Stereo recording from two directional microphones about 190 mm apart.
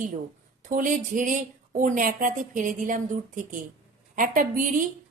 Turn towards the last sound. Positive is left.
turn(degrees=-45)  # may be behind; listen again after turning